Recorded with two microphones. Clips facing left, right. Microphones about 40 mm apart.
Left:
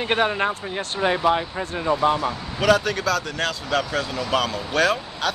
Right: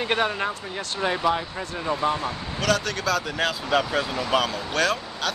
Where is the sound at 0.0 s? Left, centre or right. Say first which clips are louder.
Left 3 dB; centre.